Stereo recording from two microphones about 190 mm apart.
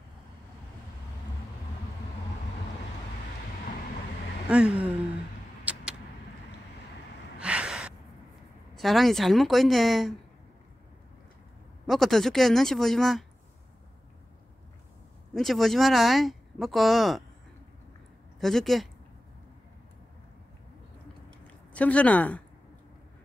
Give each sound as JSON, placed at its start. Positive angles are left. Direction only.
{"t": 4.5, "sound": "speech", "side_deg": -5}
{"t": 5.7, "sound": "vehicle", "side_deg": -5}
{"t": 7.3, "sound": "gasp", "side_deg": -5}
{"t": 8.7, "sound": "speech", "side_deg": 0}
{"t": 11.8, "sound": "speech", "side_deg": 0}
{"t": 15.3, "sound": "speech", "side_deg": 0}
{"t": 18.4, "sound": "speech", "side_deg": 0}
{"t": 21.5, "sound": "a woman's voice", "side_deg": 5}